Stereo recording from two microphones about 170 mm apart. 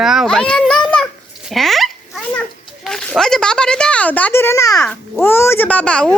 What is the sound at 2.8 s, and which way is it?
Speech, centre (ahead or behind).